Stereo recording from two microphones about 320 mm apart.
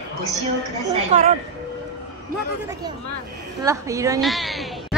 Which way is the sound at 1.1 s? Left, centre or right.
Right.